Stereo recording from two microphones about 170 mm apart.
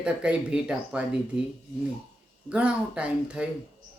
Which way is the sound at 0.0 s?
5° right (ahead or behind).